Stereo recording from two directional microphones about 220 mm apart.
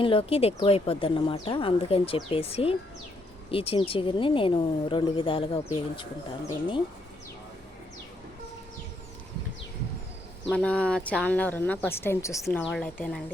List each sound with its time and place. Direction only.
0.0 s speech: 25° left (ahead or behind)
10.5 s speech: 5° left (ahead or behind)